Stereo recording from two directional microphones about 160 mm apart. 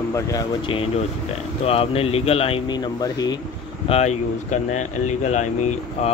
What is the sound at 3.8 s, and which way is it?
Speech, 45° left (ahead or behind).